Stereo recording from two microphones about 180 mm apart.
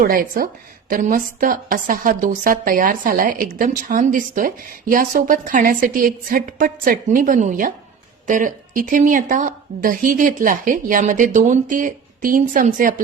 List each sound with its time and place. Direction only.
0.0 s a woman's voice: 55° right (ahead or behind)